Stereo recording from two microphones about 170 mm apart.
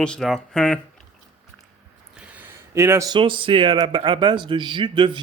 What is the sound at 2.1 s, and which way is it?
Speech, 5° right (ahead or behind).